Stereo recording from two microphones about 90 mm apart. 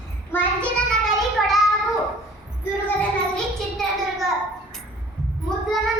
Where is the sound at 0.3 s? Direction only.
20° left (ahead or behind).